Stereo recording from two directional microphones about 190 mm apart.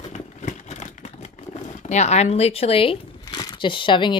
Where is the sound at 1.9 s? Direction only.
35° left (ahead or behind).